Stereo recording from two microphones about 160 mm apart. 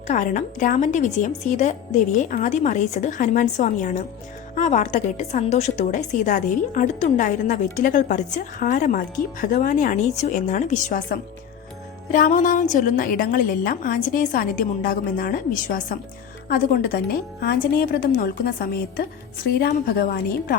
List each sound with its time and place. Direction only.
0.1 s a woman's voice: 50° left (ahead or behind); by 20.6 s 70° left (ahead or behind)